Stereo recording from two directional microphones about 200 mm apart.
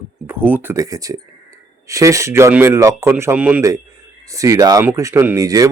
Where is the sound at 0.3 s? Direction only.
10° right (ahead or behind).